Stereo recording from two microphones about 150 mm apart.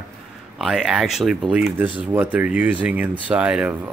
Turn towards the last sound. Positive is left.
turn(degrees=-10)  # may be behind; listen again after turning